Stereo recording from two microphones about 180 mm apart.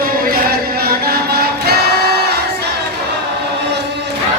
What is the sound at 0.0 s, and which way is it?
Music, 55° right (ahead or behind).